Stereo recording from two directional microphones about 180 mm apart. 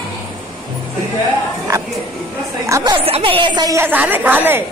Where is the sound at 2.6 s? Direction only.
20° right (ahead or behind).